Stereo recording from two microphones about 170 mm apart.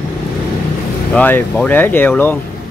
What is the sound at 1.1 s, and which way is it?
Speech, 10° left (ahead or behind).